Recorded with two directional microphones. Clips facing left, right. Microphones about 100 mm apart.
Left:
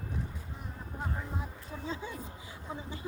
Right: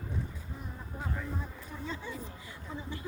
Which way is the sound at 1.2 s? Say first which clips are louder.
Right 1 dB; 15° left (ahead or behind).